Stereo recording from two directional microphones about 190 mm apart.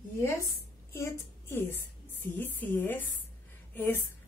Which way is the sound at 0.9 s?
15° left (ahead or behind).